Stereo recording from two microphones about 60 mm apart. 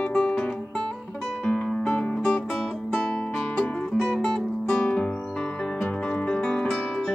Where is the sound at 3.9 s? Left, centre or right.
Centre.